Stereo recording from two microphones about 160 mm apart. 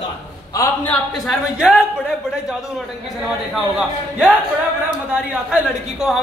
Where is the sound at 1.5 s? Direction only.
5° right (ahead or behind).